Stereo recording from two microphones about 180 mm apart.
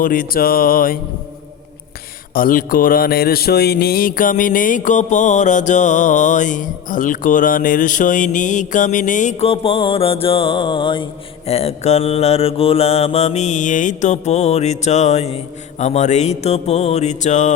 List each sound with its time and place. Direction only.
0.0 s speech: 50° left (ahead or behind)
2.3 s speech: 50° left (ahead or behind); by 11.0 s 25° left (ahead or behind)
11.4 s mantra: 35° left (ahead or behind)